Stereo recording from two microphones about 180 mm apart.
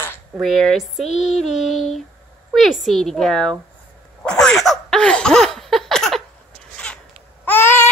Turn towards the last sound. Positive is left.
turn(degrees=10)  # may be behind; listen again after turning